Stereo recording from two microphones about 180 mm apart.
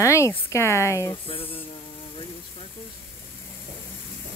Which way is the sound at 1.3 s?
30° left (ahead or behind).